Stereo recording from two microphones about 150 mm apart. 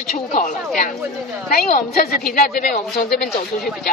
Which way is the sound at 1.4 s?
75° left (ahead or behind).